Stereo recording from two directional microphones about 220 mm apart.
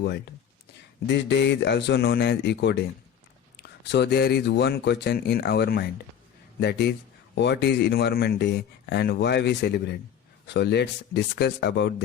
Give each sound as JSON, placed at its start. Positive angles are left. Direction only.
{"t": 0.0, "sound": "speech", "side_deg": 50}